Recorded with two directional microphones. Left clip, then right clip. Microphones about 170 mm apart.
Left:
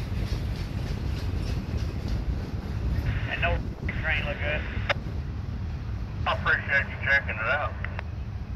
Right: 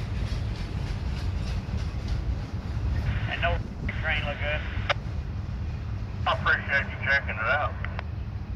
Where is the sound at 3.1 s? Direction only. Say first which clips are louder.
Even; 30° left (ahead or behind).